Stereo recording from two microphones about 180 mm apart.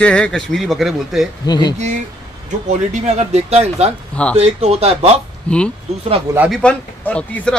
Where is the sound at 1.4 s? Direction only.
25° left (ahead or behind).